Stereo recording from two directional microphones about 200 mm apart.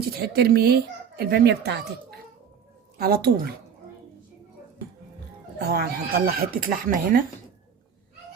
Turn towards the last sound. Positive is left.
turn(degrees=-45)  # may be behind; listen again after turning